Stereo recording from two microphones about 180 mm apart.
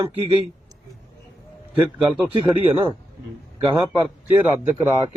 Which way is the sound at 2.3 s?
30° right (ahead or behind).